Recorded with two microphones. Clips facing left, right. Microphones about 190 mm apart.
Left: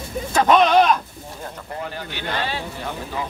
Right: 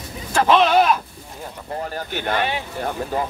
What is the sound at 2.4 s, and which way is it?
Speech, 20° right (ahead or behind).